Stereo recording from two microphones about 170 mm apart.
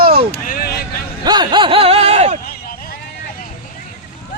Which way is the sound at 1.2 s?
25° right (ahead or behind).